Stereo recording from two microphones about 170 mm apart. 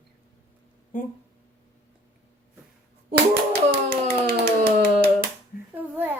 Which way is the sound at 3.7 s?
60° right (ahead or behind).